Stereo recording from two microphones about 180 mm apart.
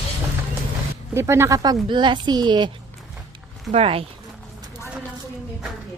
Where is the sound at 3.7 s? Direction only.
35° right (ahead or behind).